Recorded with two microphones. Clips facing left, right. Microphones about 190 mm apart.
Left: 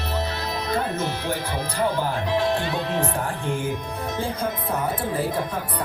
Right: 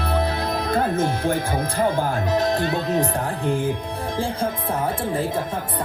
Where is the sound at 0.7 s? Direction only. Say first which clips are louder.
Right 5 dB; 50° right (ahead or behind).